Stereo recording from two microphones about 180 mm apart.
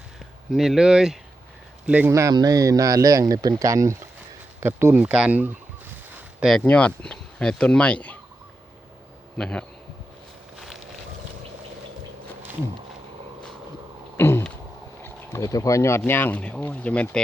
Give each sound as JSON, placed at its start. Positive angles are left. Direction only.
{"t": 0.5, "sound": "speech", "side_deg": 0}
{"t": 1.9, "sound": "speech", "side_deg": -10}
{"t": 6.4, "sound": "speech", "side_deg": 5}
{"t": 9.4, "sound": "speech", "side_deg": 5}
{"t": 10.6, "sound": "boat", "side_deg": 0}
{"t": 14.2, "sound": "a sound", "side_deg": 15}
{"t": 15.0, "sound": "speech", "side_deg": 15}